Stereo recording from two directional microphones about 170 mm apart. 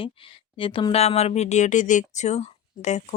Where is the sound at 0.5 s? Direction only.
30° left (ahead or behind).